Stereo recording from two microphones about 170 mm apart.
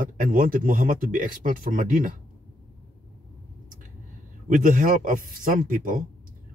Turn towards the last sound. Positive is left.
turn(degrees=-50)  # may be behind; listen again after turning